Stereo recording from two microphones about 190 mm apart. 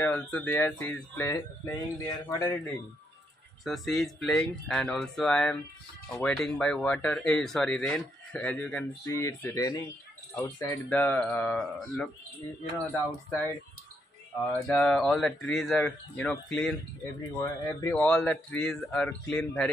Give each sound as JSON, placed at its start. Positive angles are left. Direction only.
{"t": 0.0, "sound": "speech", "side_deg": 10}
{"t": 3.6, "sound": "speech", "side_deg": 0}
{"t": 14.7, "sound": "speech", "side_deg": 5}
{"t": 17.4, "sound": "speech", "side_deg": 15}
{"t": 18.0, "sound": "speech", "side_deg": 5}